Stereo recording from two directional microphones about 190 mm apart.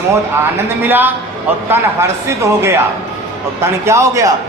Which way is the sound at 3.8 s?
15° right (ahead or behind).